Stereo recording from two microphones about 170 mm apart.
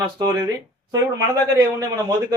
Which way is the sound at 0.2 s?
25° right (ahead or behind).